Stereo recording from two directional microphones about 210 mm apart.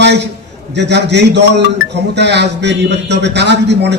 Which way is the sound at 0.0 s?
55° right (ahead or behind).